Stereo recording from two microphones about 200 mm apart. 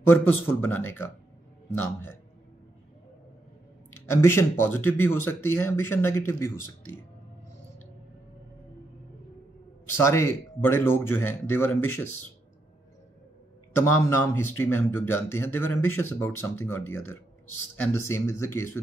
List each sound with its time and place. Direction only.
0.1 s speech: 10° left (ahead or behind)
4.0 s speech: 10° left (ahead or behind)
10.0 s speech: 15° left (ahead or behind)
13.7 s speech: 10° left (ahead or behind)